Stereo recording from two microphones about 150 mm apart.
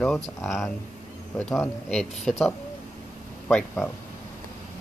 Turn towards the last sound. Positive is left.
turn(degrees=10)  # may be behind; listen again after turning